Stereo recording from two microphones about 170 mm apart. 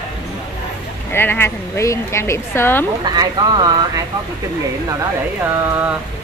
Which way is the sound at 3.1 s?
25° right (ahead or behind).